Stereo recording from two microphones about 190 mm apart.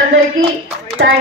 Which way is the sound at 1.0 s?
70° right (ahead or behind).